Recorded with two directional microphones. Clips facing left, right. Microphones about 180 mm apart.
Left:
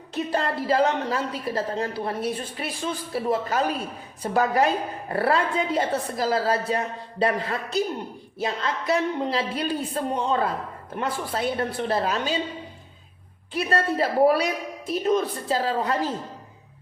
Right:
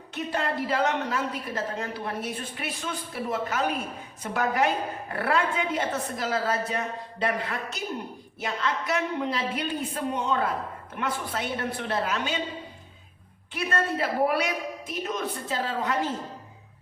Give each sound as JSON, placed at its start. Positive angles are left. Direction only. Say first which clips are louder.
{"t": 0.1, "sound": "a woman's voice", "louder": "left 3 dB", "side_deg": 35}
{"t": 13.5, "sound": "a woman's voice", "louder": "left 4 dB", "side_deg": 35}